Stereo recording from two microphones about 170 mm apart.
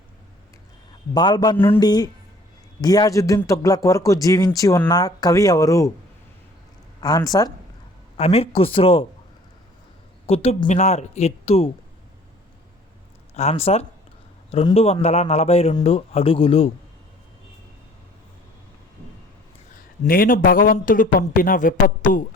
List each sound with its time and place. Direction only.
1.1 s speech: 25° left (ahead or behind)
1.5 s speech: 10° left (ahead or behind)
1.8 s speech: 25° left (ahead or behind)
7.0 s speech: 20° left (ahead or behind)
8.1 s speech: 35° left (ahead or behind)
10.2 s speech: 35° left (ahead or behind)
13.3 s speech: 40° left (ahead or behind)
19.7 s a man's voice: 55° left (ahead or behind)